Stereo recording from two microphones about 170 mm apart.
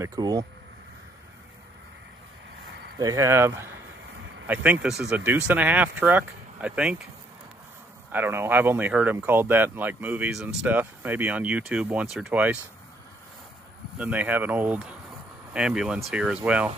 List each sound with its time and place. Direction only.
0.0 s speech: 20° right (ahead or behind)
3.0 s speech: 20° right (ahead or behind)
8.1 s speech: 10° right (ahead or behind)
13.9 s speech: 10° right (ahead or behind)